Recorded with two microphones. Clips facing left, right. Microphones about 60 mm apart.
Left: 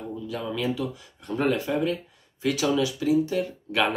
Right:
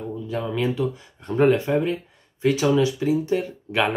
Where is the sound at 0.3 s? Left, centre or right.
Right.